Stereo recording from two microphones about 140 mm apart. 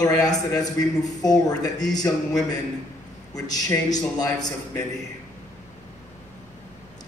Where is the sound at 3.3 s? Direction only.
25° left (ahead or behind).